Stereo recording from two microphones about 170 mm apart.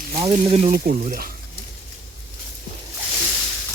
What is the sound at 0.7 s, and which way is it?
Speech, 60° right (ahead or behind).